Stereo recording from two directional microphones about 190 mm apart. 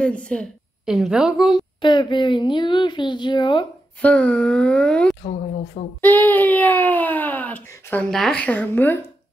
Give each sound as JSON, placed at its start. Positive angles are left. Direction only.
{"t": 0.0, "sound": "a woman's voice", "side_deg": 5}
{"t": 1.8, "sound": "a woman's voice", "side_deg": 25}
{"t": 4.0, "sound": "speech", "side_deg": 5}